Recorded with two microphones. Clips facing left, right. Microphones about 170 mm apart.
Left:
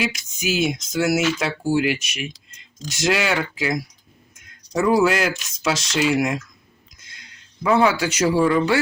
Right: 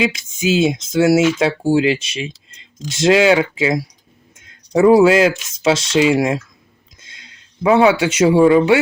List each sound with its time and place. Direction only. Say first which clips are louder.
0.1 s speech: right 7 dB; 25° right (ahead or behind)
7.0 s a sound: right 3 dB; 25° right (ahead or behind)
7.7 s speech: right 5 dB; 20° right (ahead or behind)